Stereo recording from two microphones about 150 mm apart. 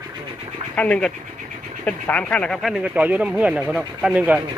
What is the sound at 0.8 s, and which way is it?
Speech, 10° left (ahead or behind).